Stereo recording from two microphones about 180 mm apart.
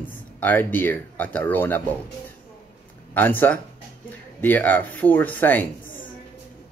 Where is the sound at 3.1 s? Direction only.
10° left (ahead or behind).